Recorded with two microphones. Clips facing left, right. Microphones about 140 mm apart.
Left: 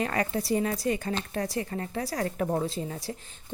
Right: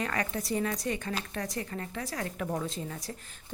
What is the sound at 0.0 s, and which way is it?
A woman's voice, 30° left (ahead or behind).